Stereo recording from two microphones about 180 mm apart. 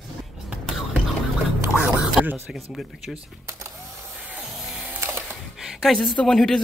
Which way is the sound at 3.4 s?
15° right (ahead or behind).